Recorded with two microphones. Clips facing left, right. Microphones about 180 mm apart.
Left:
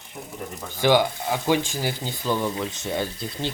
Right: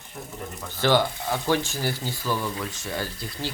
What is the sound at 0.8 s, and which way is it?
Speech, 15° left (ahead or behind).